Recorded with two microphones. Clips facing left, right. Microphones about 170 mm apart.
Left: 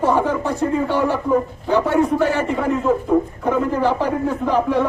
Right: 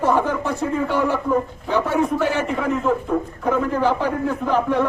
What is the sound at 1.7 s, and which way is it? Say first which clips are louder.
A man's voice: left 3 dB; centre (ahead or behind).